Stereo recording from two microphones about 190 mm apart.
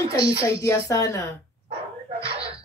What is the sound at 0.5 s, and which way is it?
Speech, 15° left (ahead or behind).